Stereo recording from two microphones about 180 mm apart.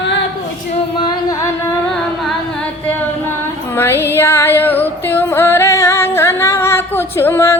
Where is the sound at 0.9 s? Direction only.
25° left (ahead or behind).